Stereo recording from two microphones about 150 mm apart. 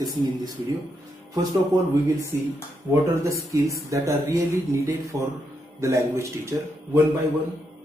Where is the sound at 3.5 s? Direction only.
20° right (ahead or behind).